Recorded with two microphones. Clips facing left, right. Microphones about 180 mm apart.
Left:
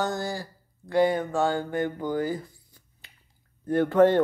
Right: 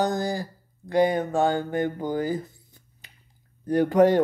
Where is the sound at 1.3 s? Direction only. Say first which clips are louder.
Right 2 dB; 20° right (ahead or behind).